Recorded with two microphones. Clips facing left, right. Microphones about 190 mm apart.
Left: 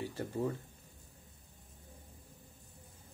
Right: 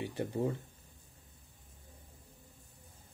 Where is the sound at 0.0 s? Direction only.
20° right (ahead or behind).